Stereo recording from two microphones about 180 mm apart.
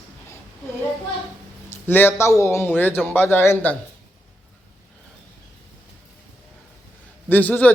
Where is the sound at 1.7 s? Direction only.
10° left (ahead or behind).